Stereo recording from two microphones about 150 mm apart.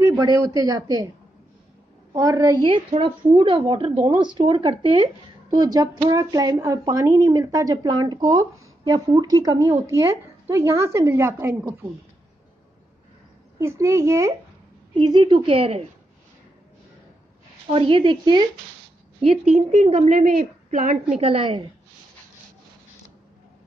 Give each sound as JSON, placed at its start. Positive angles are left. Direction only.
{"t": 0.0, "sound": "a woman's voice", "side_deg": -25}
{"t": 2.1, "sound": "a woman's voice", "side_deg": -25}
{"t": 13.6, "sound": "a woman's voice", "side_deg": -20}
{"t": 15.0, "sound": "a woman's voice", "side_deg": -30}
{"t": 17.6, "sound": "a woman's voice", "side_deg": -35}
{"t": 19.5, "sound": "a woman's voice", "side_deg": -45}
{"t": 21.2, "sound": "a woman's voice", "side_deg": -40}